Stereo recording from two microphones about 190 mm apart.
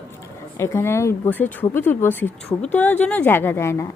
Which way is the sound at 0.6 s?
15° left (ahead or behind).